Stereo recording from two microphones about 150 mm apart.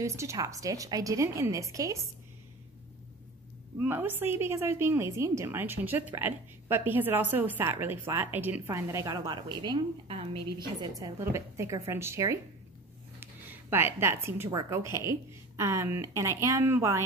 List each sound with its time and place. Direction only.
0.0 s speech: 20° right (ahead or behind)
3.8 s a woman's voice: 15° right (ahead or behind); by 10.9 s 40° right (ahead or behind)
11.0 s speech: 20° right (ahead or behind)